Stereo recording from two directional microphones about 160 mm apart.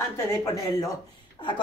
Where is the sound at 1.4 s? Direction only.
30° left (ahead or behind).